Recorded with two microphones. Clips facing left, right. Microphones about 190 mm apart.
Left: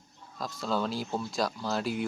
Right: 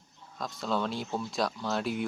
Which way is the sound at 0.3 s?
Centre (ahead or behind).